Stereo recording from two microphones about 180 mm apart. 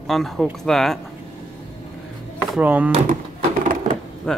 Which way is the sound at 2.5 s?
10° right (ahead or behind).